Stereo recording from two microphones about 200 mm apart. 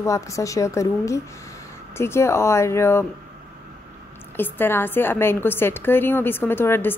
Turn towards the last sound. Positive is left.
turn(degrees=10)  # may be behind; listen again after turning